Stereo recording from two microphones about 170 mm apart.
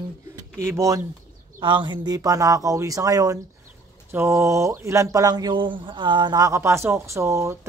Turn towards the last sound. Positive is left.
turn(degrees=-15)  # may be behind; listen again after turning